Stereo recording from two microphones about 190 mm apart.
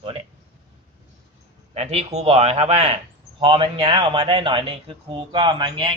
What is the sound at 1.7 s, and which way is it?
Speech, 35° right (ahead or behind).